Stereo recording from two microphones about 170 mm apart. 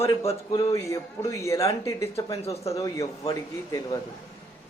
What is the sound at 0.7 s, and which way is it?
Speech, 20° left (ahead or behind).